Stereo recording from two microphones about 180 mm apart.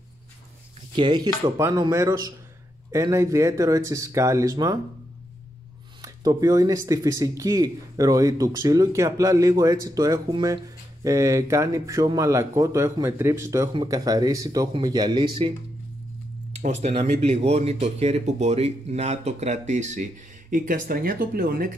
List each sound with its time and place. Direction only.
0.9 s speech: 25° right (ahead or behind)
6.0 s speech: 20° right (ahead or behind)
16.6 s speech: 40° right (ahead or behind); by 21.7 s 55° right (ahead or behind)